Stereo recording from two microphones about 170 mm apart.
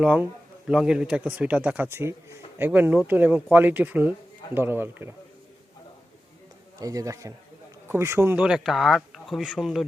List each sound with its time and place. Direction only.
0.0 s speech: 5° right (ahead or behind)
6.7 s a man's voice: 20° right (ahead or behind); by 9.8 s centre (ahead or behind)